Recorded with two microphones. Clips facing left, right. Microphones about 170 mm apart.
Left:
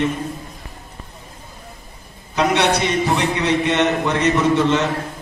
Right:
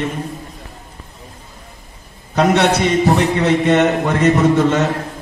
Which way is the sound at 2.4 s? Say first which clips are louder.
Right 3 dB; 45° right (ahead or behind).